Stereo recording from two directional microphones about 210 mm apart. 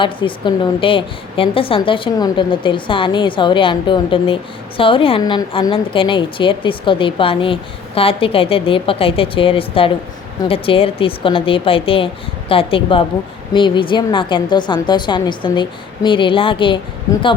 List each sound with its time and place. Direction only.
0.0 s a woman's voice: 25° left (ahead or behind)